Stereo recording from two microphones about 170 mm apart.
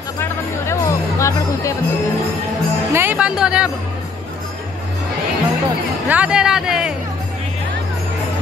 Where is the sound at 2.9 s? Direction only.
15° right (ahead or behind).